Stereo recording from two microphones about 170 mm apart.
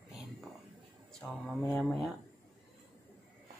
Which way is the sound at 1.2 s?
Centre (ahead or behind).